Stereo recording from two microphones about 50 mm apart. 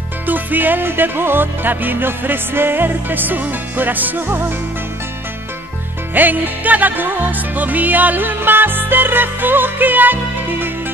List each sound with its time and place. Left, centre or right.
0.3 s music: right
6.1 s music: right